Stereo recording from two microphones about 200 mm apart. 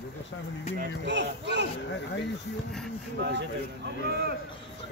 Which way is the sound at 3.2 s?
55° right (ahead or behind).